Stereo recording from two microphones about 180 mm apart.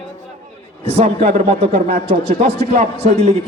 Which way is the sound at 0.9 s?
35° right (ahead or behind).